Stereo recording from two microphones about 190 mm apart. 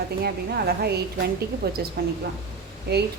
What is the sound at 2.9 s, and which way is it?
Speech, 60° right (ahead or behind).